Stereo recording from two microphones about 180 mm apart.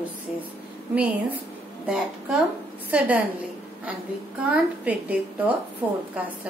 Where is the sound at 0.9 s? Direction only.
5° right (ahead or behind).